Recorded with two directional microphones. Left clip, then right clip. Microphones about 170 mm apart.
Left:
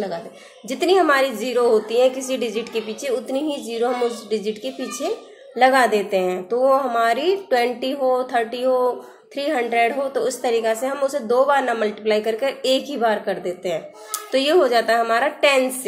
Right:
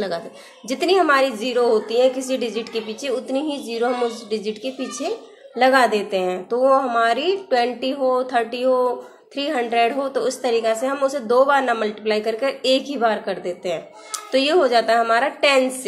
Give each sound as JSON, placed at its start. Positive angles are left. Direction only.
{"t": 0.7, "sound": "a woman's voice", "side_deg": 0}